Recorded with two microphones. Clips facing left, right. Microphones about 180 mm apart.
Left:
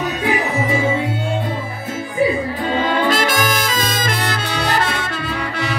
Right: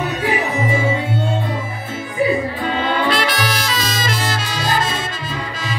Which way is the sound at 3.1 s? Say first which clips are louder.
Left 2 dB; 45° left (ahead or behind).